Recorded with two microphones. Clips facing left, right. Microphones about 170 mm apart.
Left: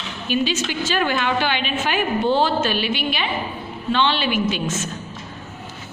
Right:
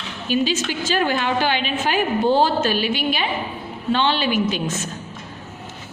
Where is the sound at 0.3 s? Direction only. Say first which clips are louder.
Right 1 dB; 40° right (ahead or behind).